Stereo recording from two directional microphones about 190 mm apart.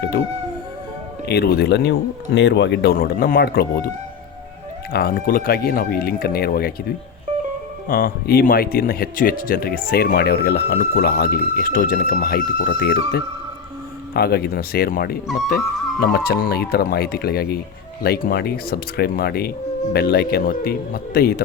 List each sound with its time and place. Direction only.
1.3 s speech: 55° left (ahead or behind)
4.9 s speech: 55° left (ahead or behind)
7.9 s speech: 50° left (ahead or behind)